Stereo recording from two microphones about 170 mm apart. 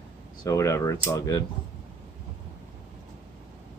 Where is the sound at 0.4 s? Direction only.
20° left (ahead or behind).